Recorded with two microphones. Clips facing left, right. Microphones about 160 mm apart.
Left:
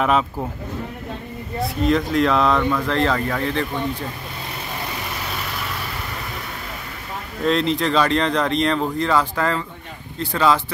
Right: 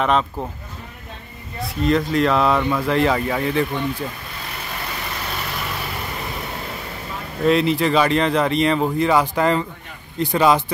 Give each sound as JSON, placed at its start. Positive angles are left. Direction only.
{"t": 0.0, "sound": "speech", "side_deg": 5}
{"t": 1.6, "sound": "speech", "side_deg": 0}
{"t": 7.4, "sound": "speech", "side_deg": -5}